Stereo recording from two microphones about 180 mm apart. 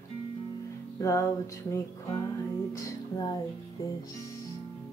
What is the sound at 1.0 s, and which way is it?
Music, 15° left (ahead or behind).